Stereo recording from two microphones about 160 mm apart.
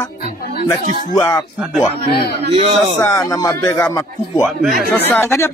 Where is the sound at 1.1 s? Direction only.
20° left (ahead or behind).